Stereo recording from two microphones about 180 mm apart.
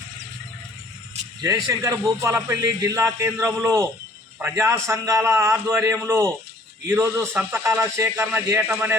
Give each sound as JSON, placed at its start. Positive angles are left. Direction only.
{"t": 1.4, "sound": "a man's voice", "side_deg": -20}